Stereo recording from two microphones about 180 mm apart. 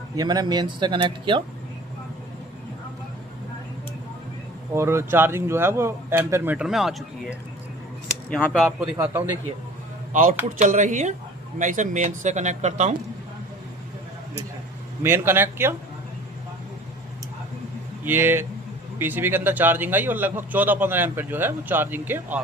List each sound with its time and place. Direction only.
0.2 s speech: 25° right (ahead or behind)
4.7 s speech: 15° right (ahead or behind); by 8.7 s 5° left (ahead or behind)
8.8 s speech: 10° right (ahead or behind)
10.1 s speech: 50° right (ahead or behind)
15.0 s speech: 10° right (ahead or behind)
18.0 s speech: 10° right (ahead or behind)